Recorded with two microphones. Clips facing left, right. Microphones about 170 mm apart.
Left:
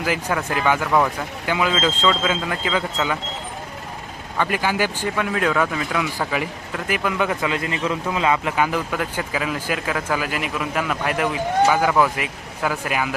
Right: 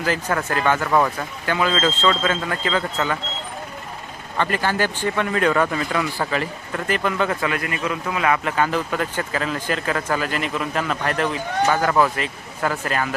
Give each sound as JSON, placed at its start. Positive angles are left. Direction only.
{"t": 0.0, "sound": "speech", "side_deg": 10}
{"t": 0.9, "sound": "speech", "side_deg": 0}
{"t": 1.5, "sound": "speech", "side_deg": 15}
{"t": 4.4, "sound": "speech", "side_deg": 10}